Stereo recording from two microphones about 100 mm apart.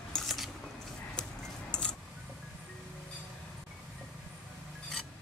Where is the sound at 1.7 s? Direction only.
10° left (ahead or behind).